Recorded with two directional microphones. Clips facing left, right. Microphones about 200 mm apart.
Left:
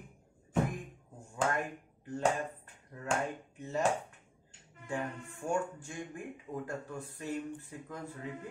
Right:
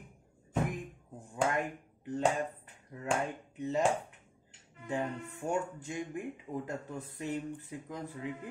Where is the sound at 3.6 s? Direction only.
15° right (ahead or behind).